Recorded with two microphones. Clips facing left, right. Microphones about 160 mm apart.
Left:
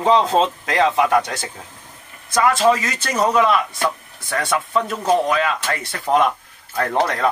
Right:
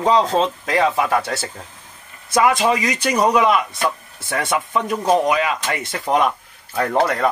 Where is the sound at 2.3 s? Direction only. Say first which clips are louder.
Even; 20° right (ahead or behind).